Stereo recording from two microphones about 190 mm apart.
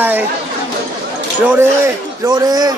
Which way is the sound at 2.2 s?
20° right (ahead or behind).